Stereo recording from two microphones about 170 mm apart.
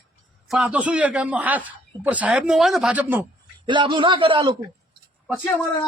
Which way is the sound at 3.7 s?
30° right (ahead or behind).